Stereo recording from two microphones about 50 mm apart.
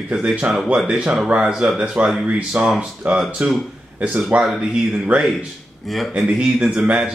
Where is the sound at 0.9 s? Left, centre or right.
Centre.